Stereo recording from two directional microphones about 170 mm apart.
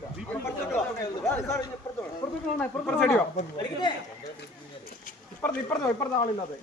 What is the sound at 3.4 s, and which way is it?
Speech, 45° left (ahead or behind).